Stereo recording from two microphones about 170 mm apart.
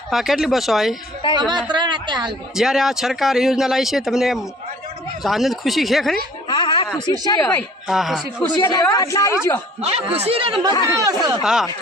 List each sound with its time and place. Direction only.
0.1 s speech: centre (ahead or behind)
1.4 s a woman's voice: 25° right (ahead or behind)
2.6 s speech: centre (ahead or behind)
6.5 s a sound: 25° left (ahead or behind)
7.0 s speech: 25° left (ahead or behind)
7.4 s speech: centre (ahead or behind)
8.6 s a woman's voice: 20° left (ahead or behind)
9.8 s a woman's voice: 35° right (ahead or behind)
11.4 s speech: 5° right (ahead or behind)